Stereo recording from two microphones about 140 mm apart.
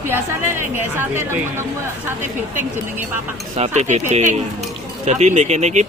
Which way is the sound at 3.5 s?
50° right (ahead or behind).